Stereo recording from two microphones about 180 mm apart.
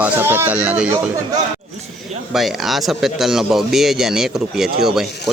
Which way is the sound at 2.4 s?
Centre (ahead or behind).